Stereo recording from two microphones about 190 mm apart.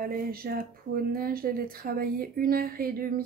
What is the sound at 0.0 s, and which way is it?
Speech, 50° right (ahead or behind).